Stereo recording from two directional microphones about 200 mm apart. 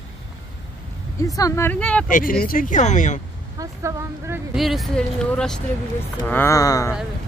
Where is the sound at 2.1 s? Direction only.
45° left (ahead or behind).